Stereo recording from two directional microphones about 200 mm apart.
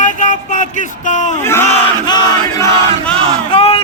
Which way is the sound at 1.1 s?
40° left (ahead or behind).